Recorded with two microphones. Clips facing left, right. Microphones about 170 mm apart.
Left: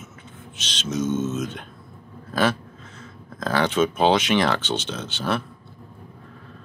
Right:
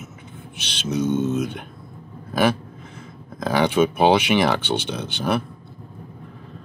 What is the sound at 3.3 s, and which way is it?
Speech, 15° right (ahead or behind).